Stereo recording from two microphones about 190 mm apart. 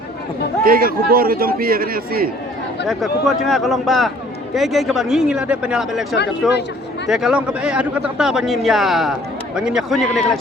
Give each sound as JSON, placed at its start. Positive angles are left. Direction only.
{"t": 0.6, "sound": "a man's voice", "side_deg": -50}
{"t": 2.8, "sound": "speech", "side_deg": 0}